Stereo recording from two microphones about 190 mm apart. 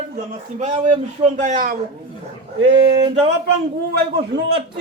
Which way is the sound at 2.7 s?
30° right (ahead or behind).